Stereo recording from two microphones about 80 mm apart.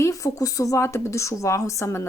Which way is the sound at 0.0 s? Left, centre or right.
Left.